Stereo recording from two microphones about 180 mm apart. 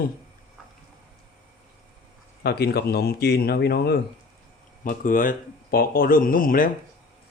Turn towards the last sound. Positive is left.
turn(degrees=50)  # may be behind; listen again after turning